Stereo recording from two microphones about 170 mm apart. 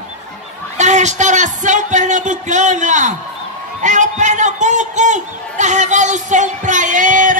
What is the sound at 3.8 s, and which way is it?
A man's voice, 45° right (ahead or behind).